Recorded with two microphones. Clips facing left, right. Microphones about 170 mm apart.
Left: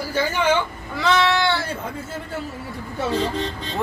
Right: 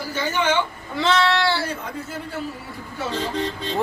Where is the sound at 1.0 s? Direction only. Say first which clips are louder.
Even; 30° right (ahead or behind).